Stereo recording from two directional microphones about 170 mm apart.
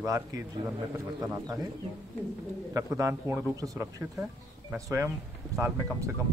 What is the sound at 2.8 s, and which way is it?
A man's voice, 20° right (ahead or behind).